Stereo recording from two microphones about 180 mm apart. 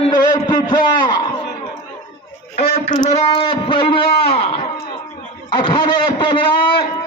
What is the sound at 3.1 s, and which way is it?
A man's voice, 35° left (ahead or behind).